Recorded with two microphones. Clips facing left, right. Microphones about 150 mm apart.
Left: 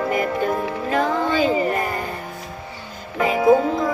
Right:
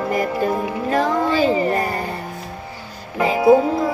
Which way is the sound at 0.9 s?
35° right (ahead or behind).